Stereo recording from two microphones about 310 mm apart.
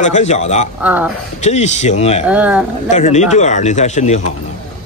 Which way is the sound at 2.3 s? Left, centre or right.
Centre.